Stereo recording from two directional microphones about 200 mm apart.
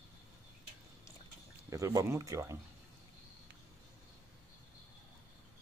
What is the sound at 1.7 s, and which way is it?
Speech, 15° right (ahead or behind).